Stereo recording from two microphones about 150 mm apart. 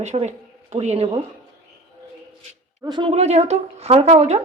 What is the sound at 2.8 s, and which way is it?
Speech, 30° right (ahead or behind).